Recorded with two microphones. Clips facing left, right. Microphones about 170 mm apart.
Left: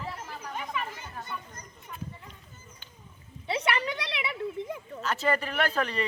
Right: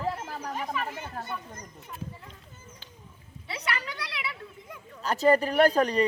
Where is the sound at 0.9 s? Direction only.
55° right (ahead or behind).